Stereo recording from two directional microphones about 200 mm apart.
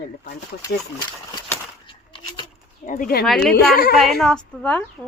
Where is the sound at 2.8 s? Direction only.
40° left (ahead or behind).